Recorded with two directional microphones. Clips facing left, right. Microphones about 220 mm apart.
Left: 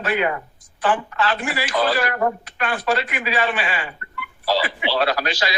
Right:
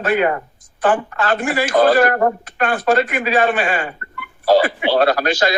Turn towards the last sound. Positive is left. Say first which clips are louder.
# right 6 dB
turn(degrees=-50)  # may be behind; listen again after turning